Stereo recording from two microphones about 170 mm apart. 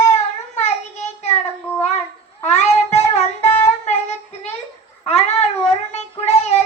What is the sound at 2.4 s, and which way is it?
Meow, 40° left (ahead or behind).